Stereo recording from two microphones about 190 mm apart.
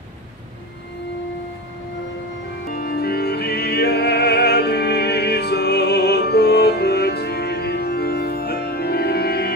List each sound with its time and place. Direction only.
2.7 s music: 50° left (ahead or behind)